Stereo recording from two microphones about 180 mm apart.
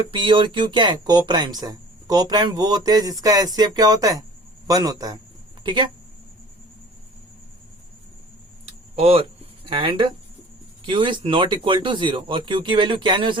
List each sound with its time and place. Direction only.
0.1 s speech: 25° right (ahead or behind)
9.0 s speech: 35° right (ahead or behind)